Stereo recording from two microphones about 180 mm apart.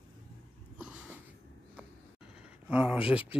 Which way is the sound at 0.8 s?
5° right (ahead or behind).